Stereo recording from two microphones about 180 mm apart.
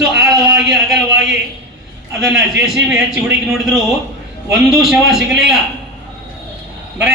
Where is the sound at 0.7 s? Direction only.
Centre (ahead or behind).